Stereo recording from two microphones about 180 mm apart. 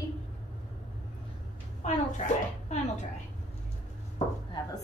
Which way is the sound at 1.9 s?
40° left (ahead or behind).